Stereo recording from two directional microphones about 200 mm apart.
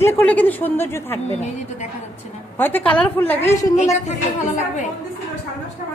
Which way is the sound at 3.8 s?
35° left (ahead or behind).